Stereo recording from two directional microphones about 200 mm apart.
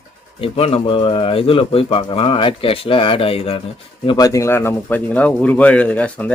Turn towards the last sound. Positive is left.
turn(degrees=5)  # may be behind; listen again after turning